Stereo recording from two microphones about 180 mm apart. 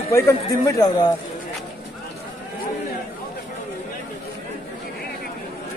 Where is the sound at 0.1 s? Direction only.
20° left (ahead or behind).